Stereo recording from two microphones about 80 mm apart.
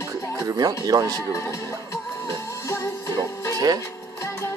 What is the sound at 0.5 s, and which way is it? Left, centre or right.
Speech, right.